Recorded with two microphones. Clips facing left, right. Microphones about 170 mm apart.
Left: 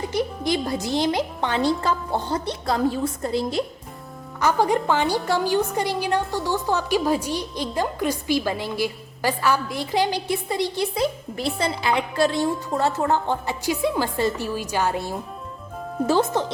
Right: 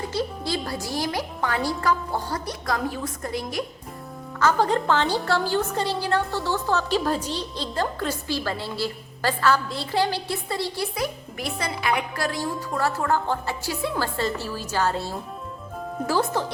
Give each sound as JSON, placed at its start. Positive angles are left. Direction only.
{"t": 0.1, "sound": "a woman's voice", "side_deg": 20}
{"t": 4.4, "sound": "a woman's voice", "side_deg": 15}